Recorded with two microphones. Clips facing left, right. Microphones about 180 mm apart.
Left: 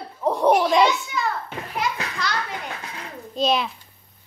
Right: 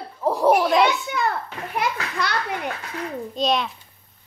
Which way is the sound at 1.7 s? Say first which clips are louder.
Right 2 dB; 60° right (ahead or behind).